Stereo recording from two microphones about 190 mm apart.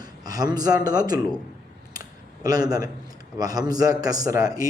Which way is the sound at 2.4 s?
20° right (ahead or behind).